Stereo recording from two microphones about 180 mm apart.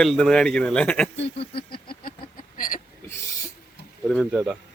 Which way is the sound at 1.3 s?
30° left (ahead or behind).